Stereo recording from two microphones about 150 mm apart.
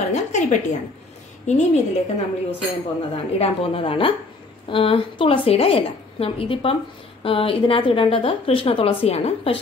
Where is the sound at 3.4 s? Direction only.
40° left (ahead or behind).